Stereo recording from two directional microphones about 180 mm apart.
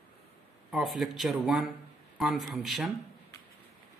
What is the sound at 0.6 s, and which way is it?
Speech, centre (ahead or behind).